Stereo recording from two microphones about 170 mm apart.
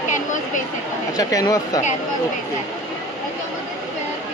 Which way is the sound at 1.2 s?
20° left (ahead or behind).